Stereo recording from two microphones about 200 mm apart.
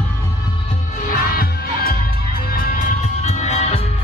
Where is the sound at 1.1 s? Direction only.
45° left (ahead or behind); by 3.8 s 30° left (ahead or behind).